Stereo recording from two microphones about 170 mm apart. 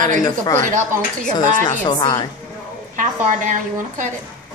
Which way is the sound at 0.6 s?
50° right (ahead or behind).